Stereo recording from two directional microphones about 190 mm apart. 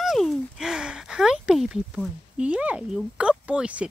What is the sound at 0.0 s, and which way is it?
Speech, centre (ahead or behind).